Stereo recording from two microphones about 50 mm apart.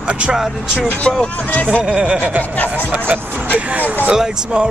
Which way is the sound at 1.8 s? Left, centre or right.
Right.